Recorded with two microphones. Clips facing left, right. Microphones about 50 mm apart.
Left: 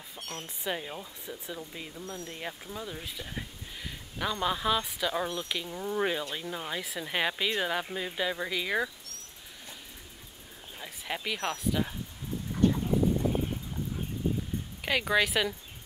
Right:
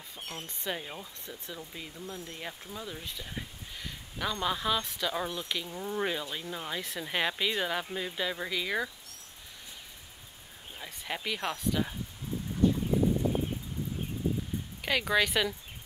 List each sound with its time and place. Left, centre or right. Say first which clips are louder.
0.4 s speech: left 2 dB; centre
2.0 s speech: left 1 dB; centre
2.3 s speech: left 2 dB; centre
10.8 s speech: left 1 dB; centre
12.6 s vehicle: left 1 dB; left
14.8 s speech: left 1 dB; centre